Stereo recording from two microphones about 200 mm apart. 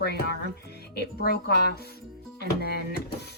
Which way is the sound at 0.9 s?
55° left (ahead or behind).